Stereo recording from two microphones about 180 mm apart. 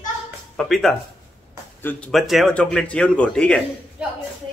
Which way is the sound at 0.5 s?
Centre (ahead or behind).